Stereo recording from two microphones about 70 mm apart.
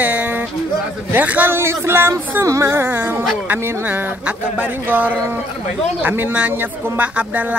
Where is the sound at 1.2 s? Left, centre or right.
Right.